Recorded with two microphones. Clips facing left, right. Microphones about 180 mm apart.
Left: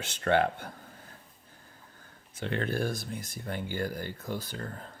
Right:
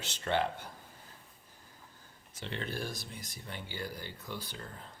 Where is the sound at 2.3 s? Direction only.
55° left (ahead or behind).